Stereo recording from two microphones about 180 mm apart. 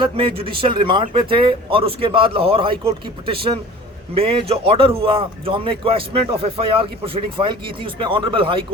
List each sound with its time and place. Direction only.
0.0 s a man's voice: 30° right (ahead or behind)